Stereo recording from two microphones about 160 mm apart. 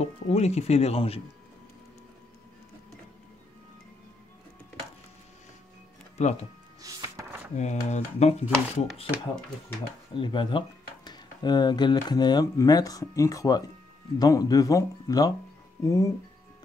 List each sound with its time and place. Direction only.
0.0 s speech: 40° left (ahead or behind)
6.2 s speech: 45° left (ahead or behind)
6.8 s music: 20° right (ahead or behind)
7.5 s speech: 45° left (ahead or behind)
10.1 s speech: 30° left (ahead or behind)